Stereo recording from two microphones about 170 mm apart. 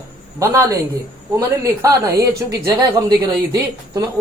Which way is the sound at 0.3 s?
15° right (ahead or behind).